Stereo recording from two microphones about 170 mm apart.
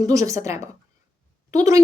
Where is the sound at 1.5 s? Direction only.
20° right (ahead or behind).